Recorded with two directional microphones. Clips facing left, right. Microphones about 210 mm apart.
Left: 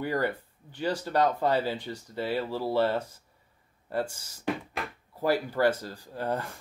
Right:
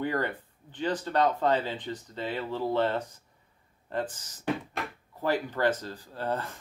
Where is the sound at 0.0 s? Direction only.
10° left (ahead or behind).